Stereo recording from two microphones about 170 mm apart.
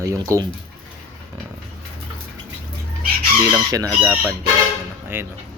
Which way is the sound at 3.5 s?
20° right (ahead or behind).